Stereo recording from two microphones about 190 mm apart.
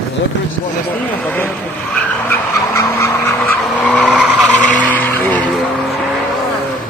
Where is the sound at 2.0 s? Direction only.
10° left (ahead or behind).